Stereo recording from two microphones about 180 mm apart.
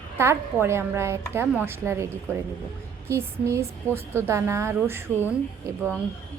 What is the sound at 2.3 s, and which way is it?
Speech, 10° left (ahead or behind).